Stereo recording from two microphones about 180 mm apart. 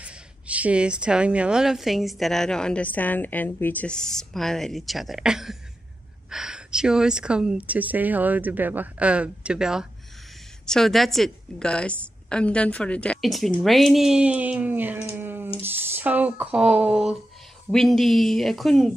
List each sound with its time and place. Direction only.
0.0 s speech: 5° right (ahead or behind)